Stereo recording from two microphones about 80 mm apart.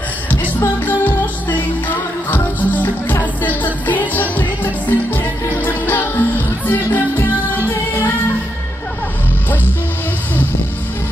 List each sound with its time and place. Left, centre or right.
0.6 s music: left